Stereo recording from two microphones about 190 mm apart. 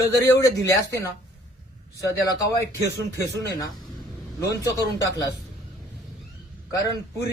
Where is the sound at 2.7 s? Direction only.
15° left (ahead or behind).